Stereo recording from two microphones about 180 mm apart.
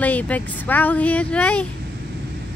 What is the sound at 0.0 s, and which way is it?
Speech, 10° left (ahead or behind).